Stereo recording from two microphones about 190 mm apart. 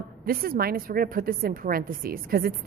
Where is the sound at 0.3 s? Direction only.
50° right (ahead or behind).